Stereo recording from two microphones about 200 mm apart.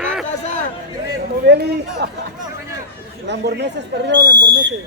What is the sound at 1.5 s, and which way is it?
Chatter, 55° right (ahead or behind).